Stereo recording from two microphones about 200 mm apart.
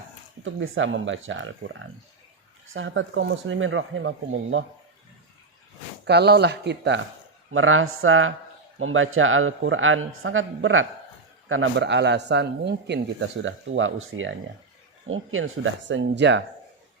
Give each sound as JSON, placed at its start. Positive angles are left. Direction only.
{"t": 0.4, "sound": "speech", "side_deg": -75}
{"t": 6.1, "sound": "speech", "side_deg": -55}
{"t": 7.5, "sound": "speech", "side_deg": -90}
{"t": 15.1, "sound": "speech", "side_deg": -90}